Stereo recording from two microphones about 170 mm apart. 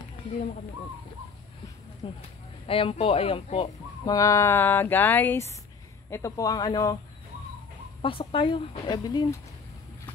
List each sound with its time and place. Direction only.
2.0 s speech: 30° left (ahead or behind)
8.0 s speech: 30° left (ahead or behind)